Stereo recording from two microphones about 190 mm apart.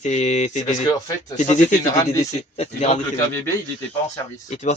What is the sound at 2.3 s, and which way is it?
Speech, 35° left (ahead or behind).